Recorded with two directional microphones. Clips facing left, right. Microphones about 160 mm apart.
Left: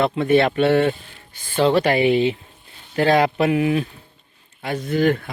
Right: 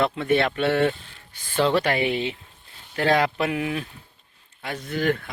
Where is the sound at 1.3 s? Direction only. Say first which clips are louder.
Left 3 dB; 5° left (ahead or behind).